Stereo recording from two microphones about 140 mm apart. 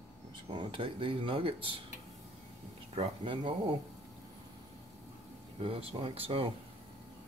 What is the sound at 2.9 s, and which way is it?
Speech, 45° right (ahead or behind).